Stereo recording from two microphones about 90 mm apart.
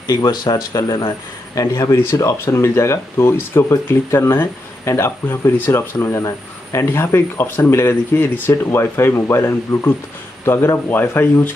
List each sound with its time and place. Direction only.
0.0 s speech: 50° left (ahead or behind)
2.4 s speech: 30° left (ahead or behind)